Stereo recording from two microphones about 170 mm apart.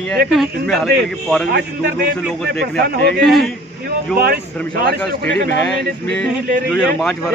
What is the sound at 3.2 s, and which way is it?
Speech, centre (ahead or behind).